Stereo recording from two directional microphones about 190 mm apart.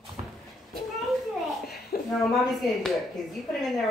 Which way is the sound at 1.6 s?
55° left (ahead or behind).